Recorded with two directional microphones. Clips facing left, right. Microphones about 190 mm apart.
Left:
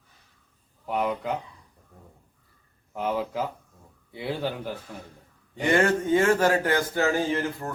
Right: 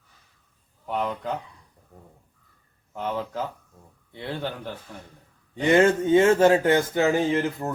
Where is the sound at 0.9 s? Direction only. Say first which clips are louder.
Left 1 dB; 5° left (ahead or behind).